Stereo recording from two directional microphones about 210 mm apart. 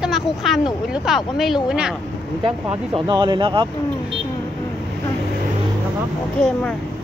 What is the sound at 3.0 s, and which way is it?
Speech, 20° right (ahead or behind).